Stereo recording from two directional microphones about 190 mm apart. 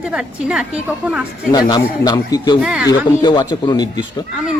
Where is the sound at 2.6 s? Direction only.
5° right (ahead or behind).